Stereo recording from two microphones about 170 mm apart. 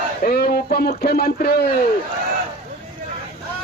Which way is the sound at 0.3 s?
60° left (ahead or behind).